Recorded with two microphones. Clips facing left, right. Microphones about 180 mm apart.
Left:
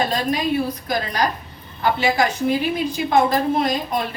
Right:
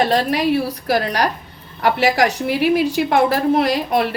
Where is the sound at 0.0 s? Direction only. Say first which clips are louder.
Right 4 dB; 75° right (ahead or behind).